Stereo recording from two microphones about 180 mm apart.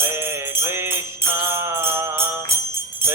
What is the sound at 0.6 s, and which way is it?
Jingle bell, 15° right (ahead or behind).